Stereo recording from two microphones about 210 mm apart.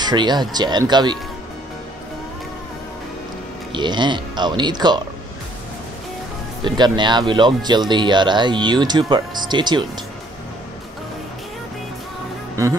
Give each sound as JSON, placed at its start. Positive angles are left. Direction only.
{"t": 0.0, "sound": "speech", "side_deg": -20}
{"t": 3.7, "sound": "speech", "side_deg": -20}
{"t": 6.6, "sound": "speech", "side_deg": -20}